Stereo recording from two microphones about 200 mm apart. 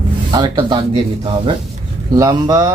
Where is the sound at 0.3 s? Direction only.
20° right (ahead or behind).